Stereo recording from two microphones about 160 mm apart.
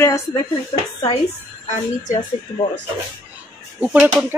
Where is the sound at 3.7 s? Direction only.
10° right (ahead or behind).